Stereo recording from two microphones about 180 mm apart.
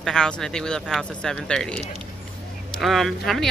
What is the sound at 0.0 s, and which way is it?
Speech, 5° left (ahead or behind).